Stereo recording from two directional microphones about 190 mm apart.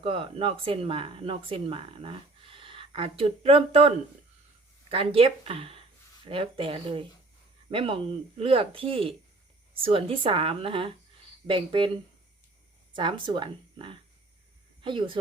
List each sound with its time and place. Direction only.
0.0 s speech: 30° right (ahead or behind)
12.9 s speech: 25° right (ahead or behind)